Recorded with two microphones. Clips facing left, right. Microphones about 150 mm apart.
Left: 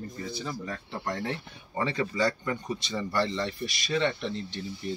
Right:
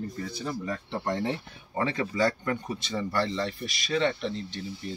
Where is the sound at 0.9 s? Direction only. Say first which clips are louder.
Right 3 dB; 25° right (ahead or behind).